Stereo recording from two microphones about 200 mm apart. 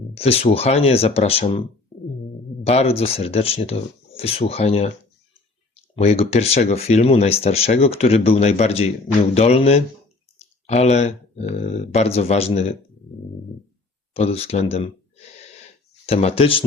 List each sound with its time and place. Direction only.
0.1 s speech: 30° left (ahead or behind)
1.9 s music: 35° left (ahead or behind)
2.6 s speech: 30° left (ahead or behind)
14.1 s speech: 30° left (ahead or behind)